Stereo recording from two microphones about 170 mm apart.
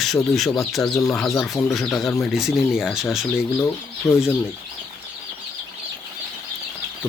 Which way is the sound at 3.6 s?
15° left (ahead or behind).